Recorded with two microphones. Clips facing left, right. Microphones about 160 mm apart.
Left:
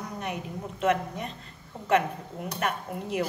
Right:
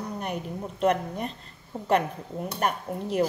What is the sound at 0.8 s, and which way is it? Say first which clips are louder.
Speech: right 2 dB; 35° right (ahead or behind).